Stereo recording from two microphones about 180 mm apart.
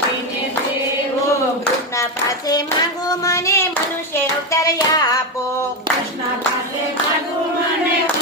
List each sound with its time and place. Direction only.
2.5 s hands: 20° left (ahead or behind)